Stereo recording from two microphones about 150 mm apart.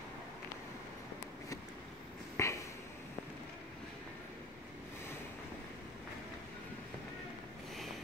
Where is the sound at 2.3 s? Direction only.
20° left (ahead or behind).